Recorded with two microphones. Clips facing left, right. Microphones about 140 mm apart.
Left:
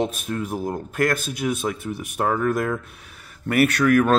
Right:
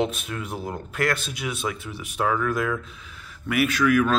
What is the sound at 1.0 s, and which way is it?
Speech, 45° left (ahead or behind).